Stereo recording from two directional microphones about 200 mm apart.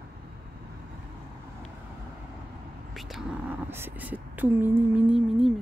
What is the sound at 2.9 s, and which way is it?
Speech, centre (ahead or behind).